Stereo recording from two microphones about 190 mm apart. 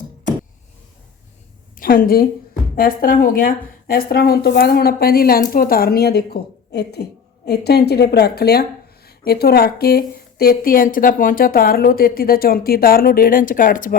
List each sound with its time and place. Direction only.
1.8 s a woman's voice: 50° left (ahead or behind)